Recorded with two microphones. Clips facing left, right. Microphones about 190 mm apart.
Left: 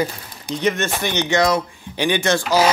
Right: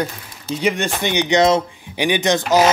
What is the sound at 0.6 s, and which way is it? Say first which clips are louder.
Speech: even; 15° right (ahead or behind).